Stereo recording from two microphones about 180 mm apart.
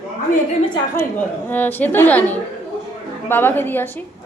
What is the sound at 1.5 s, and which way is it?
A woman's voice, 10° left (ahead or behind).